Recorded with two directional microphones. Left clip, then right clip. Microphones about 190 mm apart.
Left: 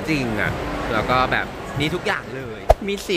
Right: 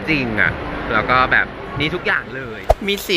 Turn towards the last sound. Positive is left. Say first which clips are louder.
# right 1 dB
turn(degrees=5)  # may be behind; listen again after turning